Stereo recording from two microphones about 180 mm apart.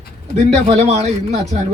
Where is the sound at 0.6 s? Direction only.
35° right (ahead or behind).